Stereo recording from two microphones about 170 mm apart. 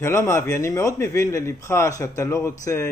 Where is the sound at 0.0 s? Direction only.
15° left (ahead or behind).